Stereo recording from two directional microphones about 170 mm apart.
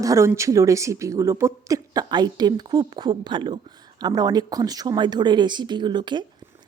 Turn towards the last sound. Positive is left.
turn(degrees=-25)  # may be behind; listen again after turning